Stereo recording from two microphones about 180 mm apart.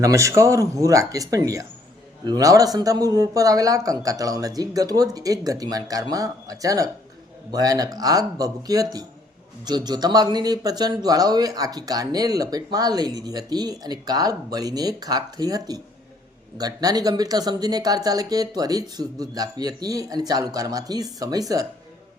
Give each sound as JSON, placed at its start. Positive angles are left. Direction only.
{"t": 0.0, "sound": "speech", "side_deg": -15}